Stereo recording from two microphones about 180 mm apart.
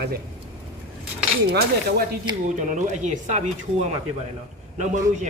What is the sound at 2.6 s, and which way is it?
Speech, 45° right (ahead or behind).